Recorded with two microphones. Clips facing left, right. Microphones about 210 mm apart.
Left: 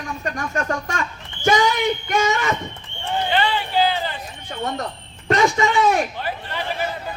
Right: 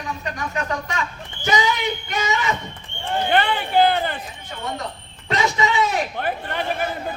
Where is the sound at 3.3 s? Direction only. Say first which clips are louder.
Right 2 dB; 55° right (ahead or behind).